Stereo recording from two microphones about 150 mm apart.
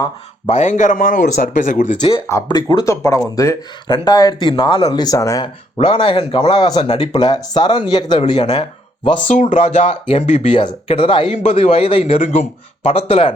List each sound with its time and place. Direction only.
0.4 s speech: 50° left (ahead or behind)
2.0 s speech: 35° left (ahead or behind)
5.7 s speech: 35° left (ahead or behind)
7.2 s speech: 30° left (ahead or behind)
9.2 s speech: 55° left (ahead or behind)
10.5 s speech: 35° left (ahead or behind)